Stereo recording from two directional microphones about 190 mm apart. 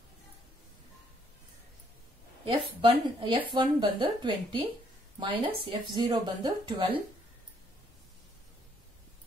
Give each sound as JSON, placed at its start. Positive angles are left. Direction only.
{"t": 2.4, "sound": "speech", "side_deg": -25}
{"t": 5.7, "sound": "speech", "side_deg": -25}